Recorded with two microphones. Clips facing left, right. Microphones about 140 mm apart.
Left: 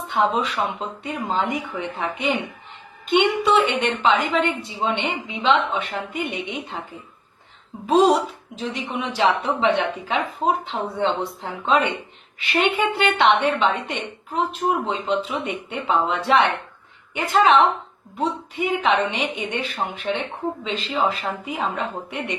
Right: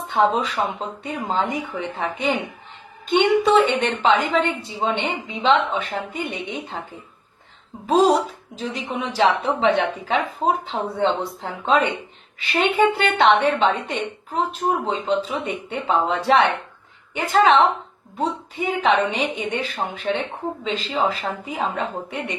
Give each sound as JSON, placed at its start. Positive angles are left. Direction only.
{"t": 0.1, "sound": "a woman's voice", "side_deg": -35}
{"t": 7.9, "sound": "a woman's voice", "side_deg": -35}